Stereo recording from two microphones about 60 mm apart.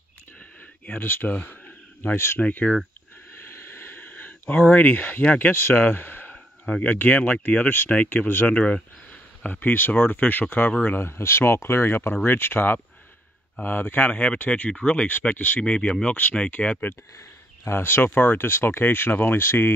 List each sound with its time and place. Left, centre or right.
0.4 s a sound: left
2.1 s speech: left
2.4 s speech: left
3.3 s a sound: left
6.3 s speech: left
8.3 s speech: left
8.5 s speech: left
9.4 s speech: left
14.1 s speech: centre
15.6 s speech: centre
17.6 s speech: left